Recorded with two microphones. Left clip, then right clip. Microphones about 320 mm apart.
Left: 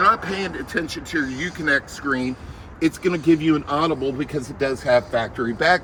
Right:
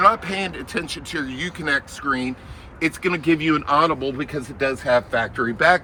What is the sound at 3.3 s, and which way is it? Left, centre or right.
Speech, centre.